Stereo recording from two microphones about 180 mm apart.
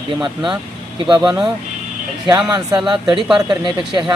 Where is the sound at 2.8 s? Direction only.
25° right (ahead or behind).